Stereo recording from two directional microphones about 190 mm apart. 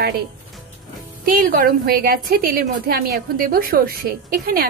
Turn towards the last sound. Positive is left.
turn(degrees=-50)  # may be behind; listen again after turning